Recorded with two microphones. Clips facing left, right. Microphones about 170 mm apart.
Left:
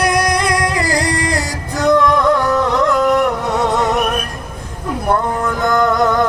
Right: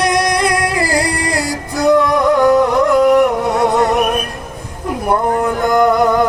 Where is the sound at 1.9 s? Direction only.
10° right (ahead or behind).